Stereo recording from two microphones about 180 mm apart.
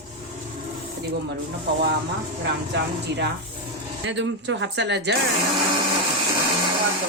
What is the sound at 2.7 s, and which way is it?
Speech, 70° right (ahead or behind).